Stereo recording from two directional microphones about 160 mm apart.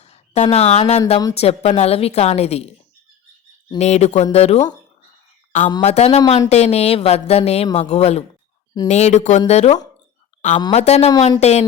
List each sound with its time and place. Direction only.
0.0 s a woman's voice: 45° left (ahead or behind)
3.8 s speech: 45° left (ahead or behind)
5.5 s a sound: 50° left (ahead or behind)
5.8 s a woman's voice: 45° left (ahead or behind)